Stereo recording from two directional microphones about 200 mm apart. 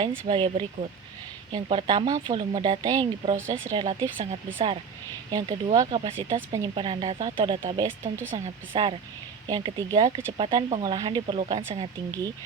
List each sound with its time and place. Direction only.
0.3 s speech: 25° right (ahead or behind)
5.3 s speech: 20° right (ahead or behind)
8.0 s speech: 10° right (ahead or behind)
8.7 s speech: 25° right (ahead or behind)